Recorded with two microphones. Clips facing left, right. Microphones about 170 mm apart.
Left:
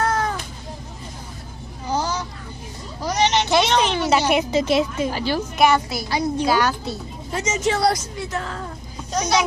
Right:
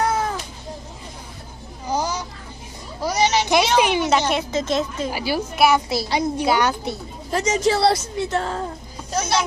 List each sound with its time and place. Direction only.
0.0 s cat: 10° right (ahead or behind)
1.9 s vehicle: 10° right (ahead or behind)
3.0 s a sound: 10° right (ahead or behind)
4.1 s speech: 10° left (ahead or behind)
5.1 s a woman's voice: 10° right (ahead or behind)
5.9 s a woman's voice: 25° right (ahead or behind)
7.3 s a woman's voice: 35° right (ahead or behind)
9.1 s speech: 5° right (ahead or behind)